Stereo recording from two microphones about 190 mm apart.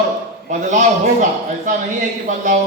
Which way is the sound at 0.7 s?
40° right (ahead or behind).